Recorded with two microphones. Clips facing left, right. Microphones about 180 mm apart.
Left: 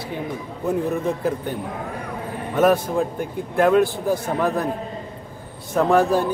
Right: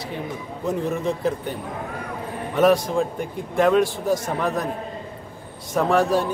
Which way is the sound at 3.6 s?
5° left (ahead or behind).